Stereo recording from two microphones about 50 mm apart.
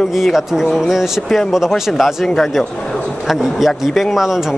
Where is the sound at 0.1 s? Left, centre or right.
Centre.